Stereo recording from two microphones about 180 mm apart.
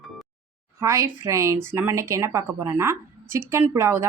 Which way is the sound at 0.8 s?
15° right (ahead or behind).